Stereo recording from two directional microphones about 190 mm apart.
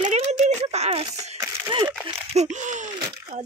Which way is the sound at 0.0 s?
35° right (ahead or behind).